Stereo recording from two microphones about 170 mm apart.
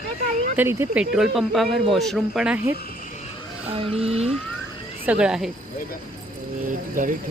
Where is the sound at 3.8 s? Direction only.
35° right (ahead or behind).